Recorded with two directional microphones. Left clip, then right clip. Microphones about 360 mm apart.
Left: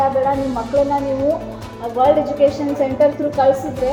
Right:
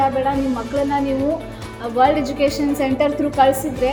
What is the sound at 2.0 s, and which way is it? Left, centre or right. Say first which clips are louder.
A woman's voice: left 2 dB; right.